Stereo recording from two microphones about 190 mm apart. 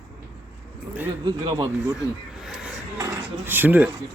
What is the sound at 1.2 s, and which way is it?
Speech, 25° right (ahead or behind).